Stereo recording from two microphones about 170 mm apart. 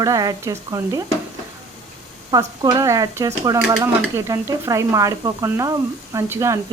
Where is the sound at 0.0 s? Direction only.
20° right (ahead or behind).